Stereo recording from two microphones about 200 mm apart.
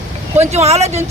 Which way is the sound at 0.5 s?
35° right (ahead or behind).